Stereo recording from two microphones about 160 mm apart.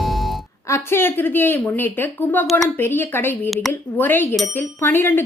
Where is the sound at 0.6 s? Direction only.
15° left (ahead or behind).